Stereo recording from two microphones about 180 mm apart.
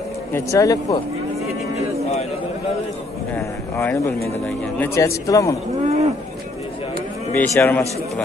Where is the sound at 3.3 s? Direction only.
15° left (ahead or behind).